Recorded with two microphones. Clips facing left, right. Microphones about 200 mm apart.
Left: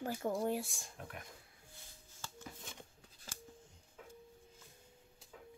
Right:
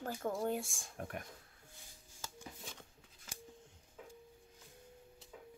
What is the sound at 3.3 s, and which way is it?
Scissors, 35° left (ahead or behind).